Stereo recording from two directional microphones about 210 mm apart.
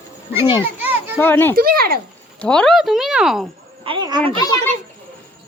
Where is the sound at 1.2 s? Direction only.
10° left (ahead or behind).